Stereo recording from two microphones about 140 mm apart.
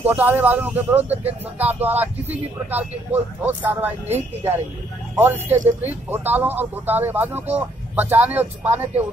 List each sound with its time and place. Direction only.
0.0 s speech: 15° right (ahead or behind)